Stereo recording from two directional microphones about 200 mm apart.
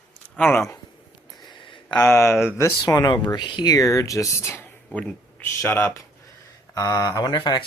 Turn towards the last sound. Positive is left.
turn(degrees=20)  # may be behind; listen again after turning